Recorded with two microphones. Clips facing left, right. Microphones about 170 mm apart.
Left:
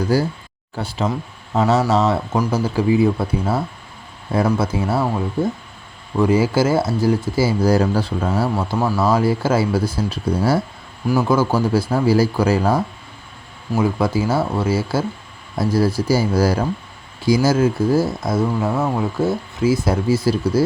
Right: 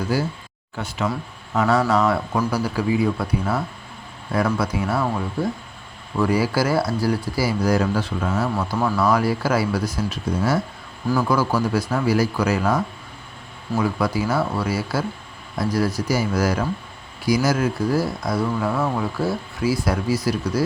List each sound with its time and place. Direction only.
0.1 s speech: 40° left (ahead or behind)